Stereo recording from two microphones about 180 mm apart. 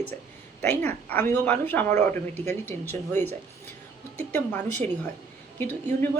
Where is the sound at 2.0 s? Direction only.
40° right (ahead or behind).